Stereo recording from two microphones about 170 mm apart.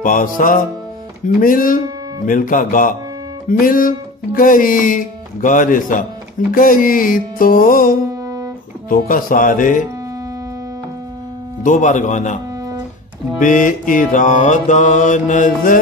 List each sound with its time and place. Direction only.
0.0 s music: 50° left (ahead or behind)
8.1 s music: 20° right (ahead or behind)
8.8 s music: 55° left (ahead or behind)
11.6 s music: 50° left (ahead or behind)
13.4 s music: 50° left (ahead or behind)